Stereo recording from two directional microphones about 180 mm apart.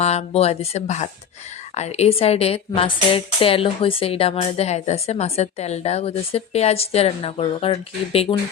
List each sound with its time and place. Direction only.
0.0 s a woman's voice: 35° left (ahead or behind)